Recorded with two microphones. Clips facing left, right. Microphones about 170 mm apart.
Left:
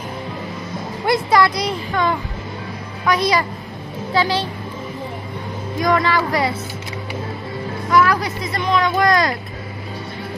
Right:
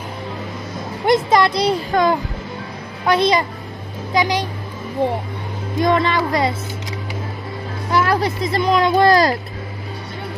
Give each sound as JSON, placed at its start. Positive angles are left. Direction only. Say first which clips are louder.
{"t": 1.0, "sound": "speech", "louder": "right 2 dB", "side_deg": -20}
{"t": 3.1, "sound": "speech", "louder": "right 2 dB", "side_deg": -25}
{"t": 5.8, "sound": "speech", "louder": "right 1 dB", "side_deg": -25}
{"t": 7.9, "sound": "speech", "louder": "left 1 dB", "side_deg": -30}